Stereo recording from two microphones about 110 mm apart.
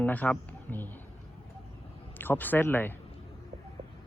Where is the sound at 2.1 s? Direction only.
20° left (ahead or behind).